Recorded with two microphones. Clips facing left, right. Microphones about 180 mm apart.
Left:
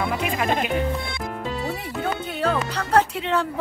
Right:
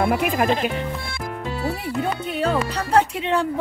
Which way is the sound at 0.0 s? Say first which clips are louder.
Right 5 dB; 55° right (ahead or behind).